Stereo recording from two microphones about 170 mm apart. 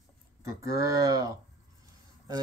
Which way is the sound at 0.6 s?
20° right (ahead or behind).